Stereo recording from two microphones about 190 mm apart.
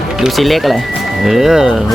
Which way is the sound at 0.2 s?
Centre (ahead or behind).